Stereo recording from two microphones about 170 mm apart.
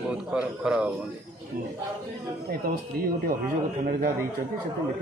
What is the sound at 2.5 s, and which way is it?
A man's voice, 60° right (ahead or behind).